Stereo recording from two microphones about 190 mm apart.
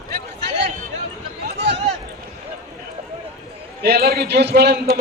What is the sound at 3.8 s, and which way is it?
A man's voice, 55° right (ahead or behind).